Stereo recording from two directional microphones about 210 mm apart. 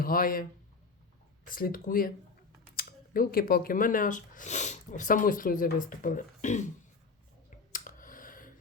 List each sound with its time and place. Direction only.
0.0 s speech: 45° left (ahead or behind)
1.5 s speech: 45° left (ahead or behind)
7.7 s a sound: 40° left (ahead or behind)